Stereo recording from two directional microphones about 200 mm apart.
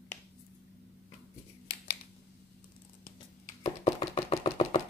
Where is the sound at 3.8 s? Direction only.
30° left (ahead or behind).